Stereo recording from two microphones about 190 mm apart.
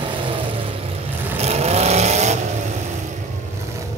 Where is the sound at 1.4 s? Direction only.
35° right (ahead or behind).